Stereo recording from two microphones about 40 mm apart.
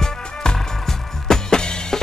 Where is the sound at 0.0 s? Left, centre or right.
Centre.